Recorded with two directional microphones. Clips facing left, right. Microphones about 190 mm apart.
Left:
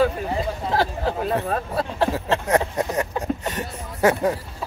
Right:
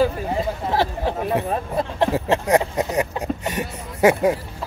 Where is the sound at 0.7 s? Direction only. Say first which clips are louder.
Even; 20° right (ahead or behind).